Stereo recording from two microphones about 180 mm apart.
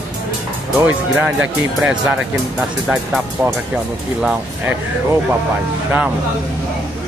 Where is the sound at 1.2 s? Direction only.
5° right (ahead or behind).